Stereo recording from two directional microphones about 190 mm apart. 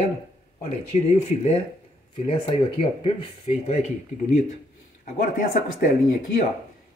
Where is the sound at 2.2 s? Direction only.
30° left (ahead or behind).